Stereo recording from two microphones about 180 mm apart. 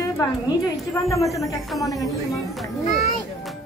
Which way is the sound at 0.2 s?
20° left (ahead or behind).